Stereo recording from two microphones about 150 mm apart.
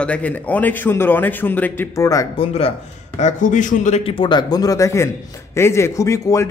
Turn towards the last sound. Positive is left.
turn(degrees=20)  # may be behind; listen again after turning